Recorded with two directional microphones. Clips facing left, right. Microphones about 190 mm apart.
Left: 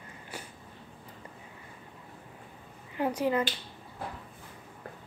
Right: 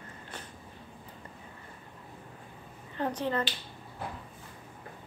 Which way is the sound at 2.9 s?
10° left (ahead or behind).